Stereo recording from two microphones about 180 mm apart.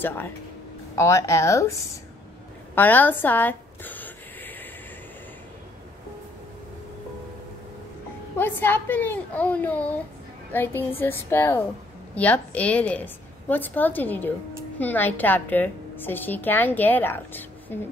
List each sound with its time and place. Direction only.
0.9 s a woman's voice: 15° left (ahead or behind)
2.7 s a sound: 10° left (ahead or behind)
8.4 s a woman's voice: 10° left (ahead or behind)